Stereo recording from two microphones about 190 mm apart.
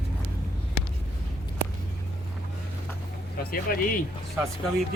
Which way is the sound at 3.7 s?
50° left (ahead or behind).